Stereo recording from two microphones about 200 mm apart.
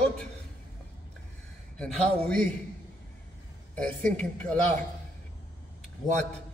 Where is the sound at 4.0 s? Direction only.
40° right (ahead or behind).